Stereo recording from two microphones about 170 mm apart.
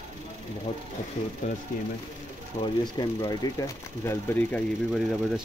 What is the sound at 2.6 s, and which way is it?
Speech, 25° left (ahead or behind).